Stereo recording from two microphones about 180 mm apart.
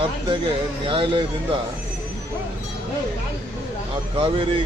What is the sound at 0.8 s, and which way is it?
Speech, 30° right (ahead or behind).